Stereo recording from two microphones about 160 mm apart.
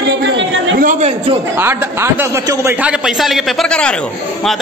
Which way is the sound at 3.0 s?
Centre (ahead or behind).